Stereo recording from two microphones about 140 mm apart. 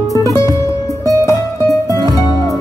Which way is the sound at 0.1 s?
25° left (ahead or behind).